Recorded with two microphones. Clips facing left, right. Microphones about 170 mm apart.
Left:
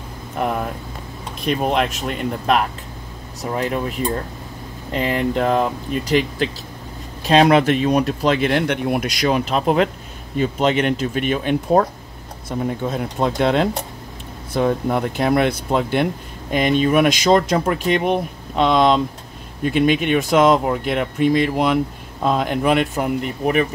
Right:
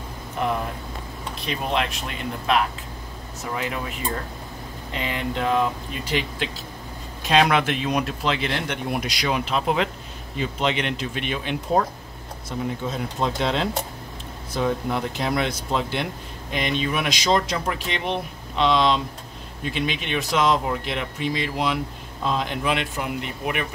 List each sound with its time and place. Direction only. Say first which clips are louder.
1.4 s speech: left 7 dB; 50° left (ahead or behind)
4.9 s speech: left 8 dB; 40° left (ahead or behind)